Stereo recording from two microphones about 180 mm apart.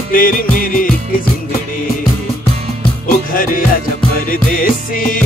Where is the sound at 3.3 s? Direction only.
50° left (ahead or behind).